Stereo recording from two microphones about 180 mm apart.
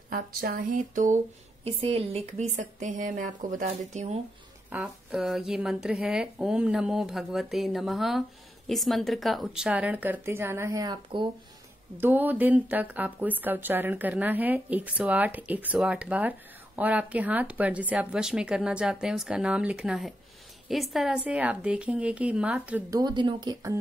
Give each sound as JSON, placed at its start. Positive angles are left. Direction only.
{"t": 0.1, "sound": "speech", "side_deg": -55}
{"t": 1.8, "sound": "speech", "side_deg": -35}
{"t": 4.6, "sound": "a woman's voice", "side_deg": -5}
{"t": 12.0, "sound": "speech", "side_deg": -10}
{"t": 22.9, "sound": "speech", "side_deg": -25}